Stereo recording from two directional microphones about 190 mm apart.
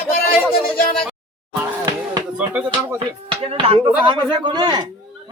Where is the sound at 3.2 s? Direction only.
30° right (ahead or behind).